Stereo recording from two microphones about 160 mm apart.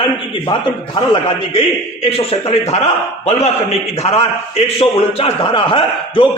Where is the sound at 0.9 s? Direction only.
35° left (ahead or behind).